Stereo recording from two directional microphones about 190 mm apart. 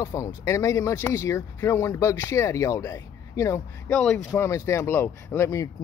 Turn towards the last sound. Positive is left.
turn(degrees=15)  # may be behind; listen again after turning